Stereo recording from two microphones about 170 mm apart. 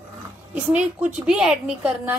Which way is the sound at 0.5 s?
10° right (ahead or behind).